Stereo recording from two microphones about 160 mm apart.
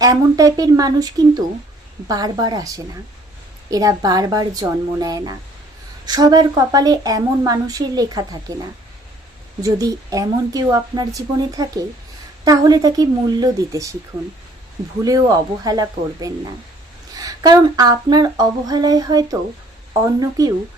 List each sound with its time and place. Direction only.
0.0 s a woman's voice: 20° right (ahead or behind)
9.6 s a woman's voice: 20° right (ahead or behind)
15.0 s a woman's voice: 25° right (ahead or behind)